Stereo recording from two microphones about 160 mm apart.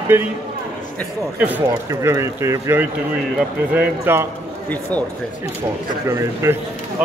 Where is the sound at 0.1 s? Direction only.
15° right (ahead or behind).